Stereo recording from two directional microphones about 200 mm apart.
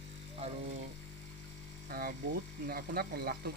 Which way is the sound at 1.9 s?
45° right (ahead or behind).